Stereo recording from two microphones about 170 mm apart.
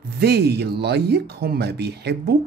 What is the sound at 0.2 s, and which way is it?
Speech, 70° right (ahead or behind).